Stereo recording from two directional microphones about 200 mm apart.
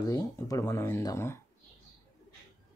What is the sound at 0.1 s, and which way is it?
Speech, 20° left (ahead or behind).